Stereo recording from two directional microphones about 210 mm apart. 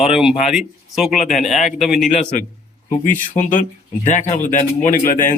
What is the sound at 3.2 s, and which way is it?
Speech, 40° left (ahead or behind).